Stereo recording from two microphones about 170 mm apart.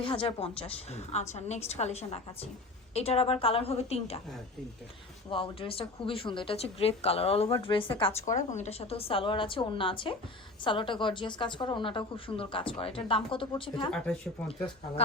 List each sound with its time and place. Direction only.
0.0 s a woman's voice: 30° left (ahead or behind)
5.3 s a woman's voice: 30° left (ahead or behind)
8.2 s a woman's voice: 45° left (ahead or behind); by 13.9 s 25° left (ahead or behind)
13.9 s speech: 5° left (ahead or behind)